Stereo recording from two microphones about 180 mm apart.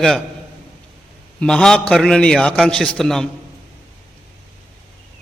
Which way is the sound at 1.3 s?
5° left (ahead or behind).